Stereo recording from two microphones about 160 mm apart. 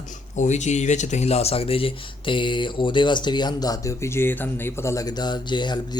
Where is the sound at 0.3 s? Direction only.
45° left (ahead or behind).